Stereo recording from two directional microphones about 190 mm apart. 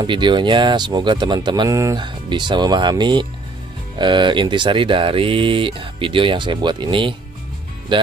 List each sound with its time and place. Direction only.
0.0 s speech: 25° right (ahead or behind)